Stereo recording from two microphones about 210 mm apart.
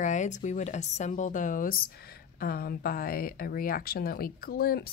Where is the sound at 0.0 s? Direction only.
35° left (ahead or behind).